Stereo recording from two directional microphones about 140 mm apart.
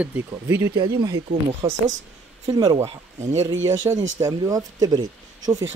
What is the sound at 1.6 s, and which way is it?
Speech, 50° right (ahead or behind).